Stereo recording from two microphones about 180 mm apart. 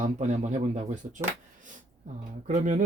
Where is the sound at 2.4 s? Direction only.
45° right (ahead or behind).